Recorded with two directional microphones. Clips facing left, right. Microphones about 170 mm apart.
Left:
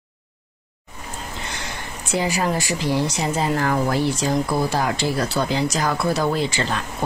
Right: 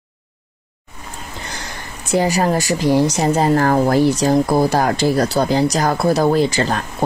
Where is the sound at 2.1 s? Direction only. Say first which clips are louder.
Right 6 dB; 40° right (ahead or behind).